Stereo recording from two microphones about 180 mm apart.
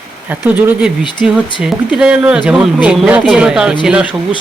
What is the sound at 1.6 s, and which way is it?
Speech, 5° right (ahead or behind).